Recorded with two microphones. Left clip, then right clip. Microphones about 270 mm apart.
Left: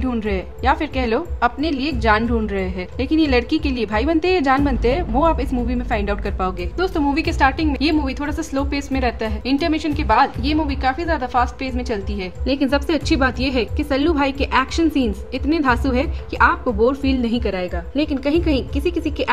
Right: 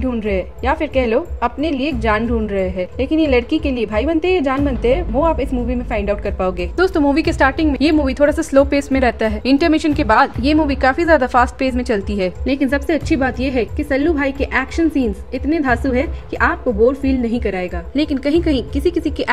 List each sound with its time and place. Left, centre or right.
0.0 s a woman's voice: centre
6.8 s a woman's voice: centre
12.5 s a woman's voice: centre